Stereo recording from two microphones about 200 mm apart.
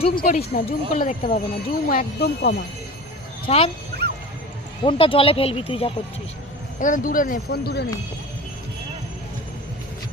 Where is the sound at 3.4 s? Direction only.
30° left (ahead or behind).